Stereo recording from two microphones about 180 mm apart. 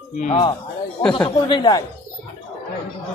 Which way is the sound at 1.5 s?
25° left (ahead or behind).